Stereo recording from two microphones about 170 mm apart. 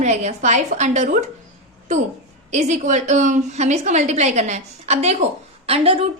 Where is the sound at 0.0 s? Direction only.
40° right (ahead or behind).